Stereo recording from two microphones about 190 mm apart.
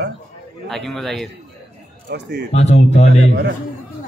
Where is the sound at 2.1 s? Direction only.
60° right (ahead or behind).